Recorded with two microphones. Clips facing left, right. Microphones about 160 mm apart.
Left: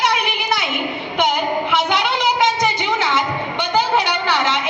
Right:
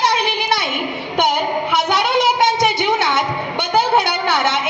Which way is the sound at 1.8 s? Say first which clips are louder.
Right 2 dB; 40° right (ahead or behind).